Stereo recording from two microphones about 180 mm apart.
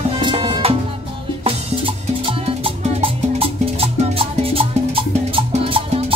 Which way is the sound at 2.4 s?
30° right (ahead or behind).